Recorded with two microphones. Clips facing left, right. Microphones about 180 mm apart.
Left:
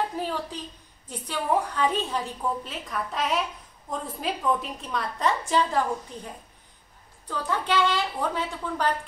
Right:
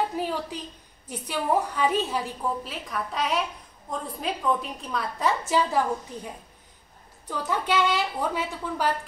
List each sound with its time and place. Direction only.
0.2 s a sound: 10° right (ahead or behind)
1.0 s a woman's voice: 10° right (ahead or behind)
7.2 s a woman's voice: 10° right (ahead or behind)